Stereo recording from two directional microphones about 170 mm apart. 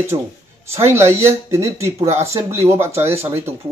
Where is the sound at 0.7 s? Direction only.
15° right (ahead or behind).